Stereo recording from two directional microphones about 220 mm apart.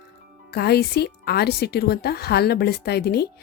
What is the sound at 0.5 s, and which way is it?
Speech, 45° left (ahead or behind).